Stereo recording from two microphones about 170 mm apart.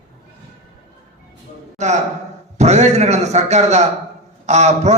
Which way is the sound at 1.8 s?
45° right (ahead or behind).